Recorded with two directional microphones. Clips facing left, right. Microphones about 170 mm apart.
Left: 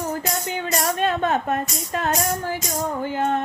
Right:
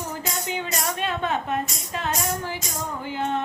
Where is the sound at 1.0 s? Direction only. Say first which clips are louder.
Left 5 dB; 45° left (ahead or behind).